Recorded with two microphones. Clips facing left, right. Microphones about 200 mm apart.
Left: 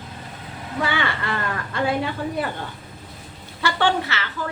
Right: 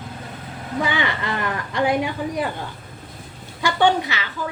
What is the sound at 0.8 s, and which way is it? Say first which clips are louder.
Speech: right 1 dB; 15° right (ahead or behind).